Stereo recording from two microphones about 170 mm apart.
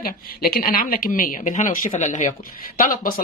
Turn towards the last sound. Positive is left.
turn(degrees=55)  # may be behind; listen again after turning